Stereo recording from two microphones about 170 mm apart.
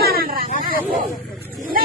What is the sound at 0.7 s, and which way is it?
Wild animals, 55° left (ahead or behind).